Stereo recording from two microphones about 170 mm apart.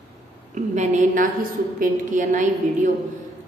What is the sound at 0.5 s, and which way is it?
A woman's voice, 45° right (ahead or behind).